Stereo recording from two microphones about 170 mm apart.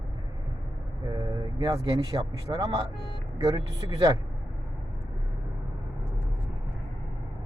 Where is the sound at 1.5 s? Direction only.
20° right (ahead or behind).